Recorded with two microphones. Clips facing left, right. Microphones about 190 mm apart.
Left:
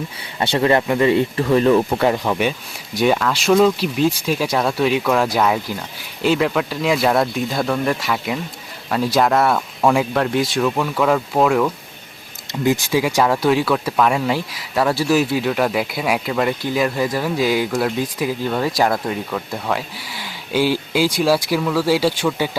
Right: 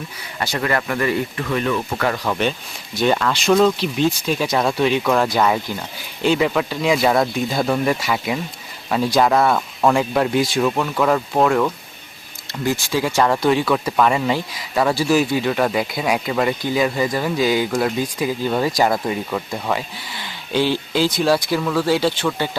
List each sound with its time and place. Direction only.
0.3 s speech: 30° left (ahead or behind)
2.0 s speech: 20° left (ahead or behind); by 11.7 s 5° left (ahead or behind)
12.6 s speech: 15° left (ahead or behind)